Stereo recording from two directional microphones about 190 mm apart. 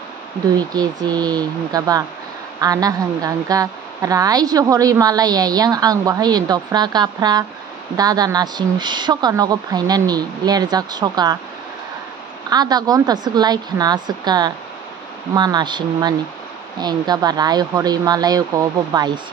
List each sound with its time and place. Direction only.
0.6 s a woman's voice: 20° right (ahead or behind)
12.4 s a woman's voice: 20° right (ahead or behind)